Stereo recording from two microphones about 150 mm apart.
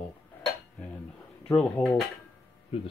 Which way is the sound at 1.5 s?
5° left (ahead or behind).